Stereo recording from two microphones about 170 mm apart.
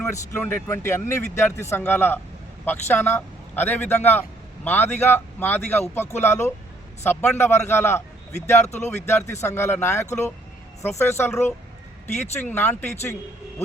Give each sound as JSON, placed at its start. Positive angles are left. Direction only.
{"t": 0.0, "sound": "a man's voice", "side_deg": 15}
{"t": 9.0, "sound": "a man's voice", "side_deg": 15}